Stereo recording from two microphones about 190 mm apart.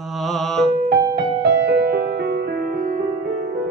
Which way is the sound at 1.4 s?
60° right (ahead or behind).